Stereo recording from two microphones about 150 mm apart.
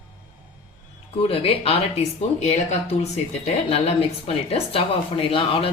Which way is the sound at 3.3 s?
45° left (ahead or behind).